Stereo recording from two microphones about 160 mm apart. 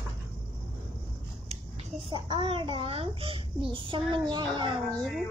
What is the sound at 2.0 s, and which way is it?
A child's voice, 30° right (ahead or behind).